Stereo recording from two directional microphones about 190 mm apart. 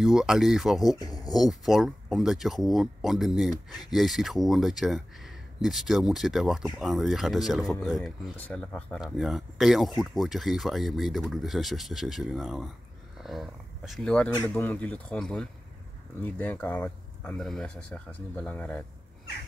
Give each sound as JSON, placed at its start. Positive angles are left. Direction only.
{"t": 0.0, "sound": "speech", "side_deg": 0}
{"t": 0.9, "sound": "speech", "side_deg": 20}
{"t": 1.5, "sound": "speech", "side_deg": 0}